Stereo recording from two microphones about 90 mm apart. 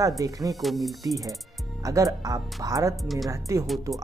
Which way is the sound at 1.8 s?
40° right (ahead or behind).